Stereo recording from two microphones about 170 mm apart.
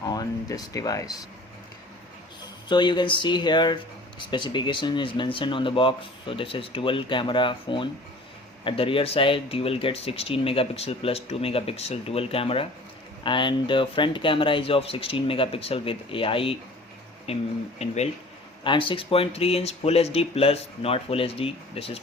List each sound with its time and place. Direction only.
0.0 s speech: 25° left (ahead or behind)
2.6 s speech: 25° left (ahead or behind)